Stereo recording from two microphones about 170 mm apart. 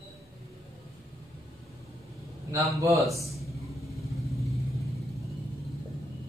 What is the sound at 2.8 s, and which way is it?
Speech, 20° right (ahead or behind).